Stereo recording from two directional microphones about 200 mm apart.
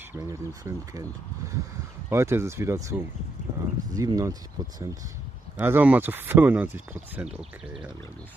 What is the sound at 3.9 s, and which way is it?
Speech, 15° right (ahead or behind).